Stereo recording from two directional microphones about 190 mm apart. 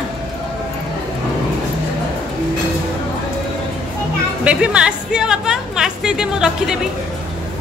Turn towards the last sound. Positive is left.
turn(degrees=-5)  # may be behind; listen again after turning